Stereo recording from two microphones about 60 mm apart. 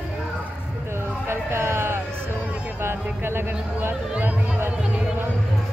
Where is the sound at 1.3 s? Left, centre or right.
Right.